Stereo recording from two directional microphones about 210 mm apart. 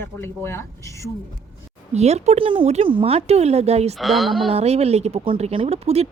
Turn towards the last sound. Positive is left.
turn(degrees=-30)  # may be behind; listen again after turning